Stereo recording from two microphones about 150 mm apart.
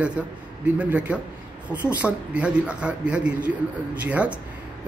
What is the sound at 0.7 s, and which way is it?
Speech, 10° right (ahead or behind).